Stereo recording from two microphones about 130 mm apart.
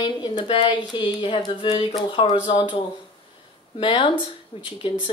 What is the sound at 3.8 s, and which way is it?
Speech, 40° left (ahead or behind).